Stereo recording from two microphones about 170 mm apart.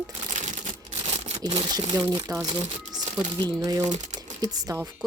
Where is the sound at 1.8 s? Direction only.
30° right (ahead or behind).